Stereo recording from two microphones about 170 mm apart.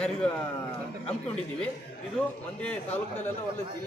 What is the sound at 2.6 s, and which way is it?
Speech, 10° left (ahead or behind).